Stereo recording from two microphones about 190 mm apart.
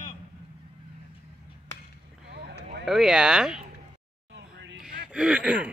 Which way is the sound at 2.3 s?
60° right (ahead or behind).